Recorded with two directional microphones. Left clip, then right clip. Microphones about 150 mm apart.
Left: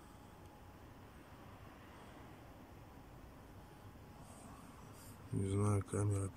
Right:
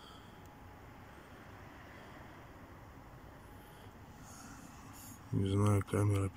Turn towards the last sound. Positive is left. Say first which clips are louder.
# right 6 dB
turn(degrees=-5)  # may be behind; listen again after turning